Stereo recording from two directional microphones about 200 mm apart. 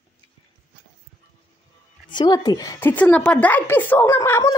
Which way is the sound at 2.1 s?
20° left (ahead or behind).